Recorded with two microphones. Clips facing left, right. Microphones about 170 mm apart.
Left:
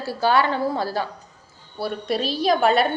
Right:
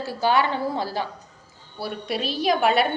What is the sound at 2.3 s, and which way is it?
Speech, 10° right (ahead or behind).